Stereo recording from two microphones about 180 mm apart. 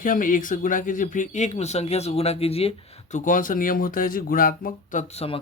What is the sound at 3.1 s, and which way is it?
Speech, 45° left (ahead or behind).